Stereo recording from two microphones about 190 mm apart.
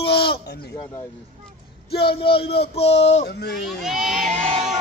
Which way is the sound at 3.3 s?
60° left (ahead or behind).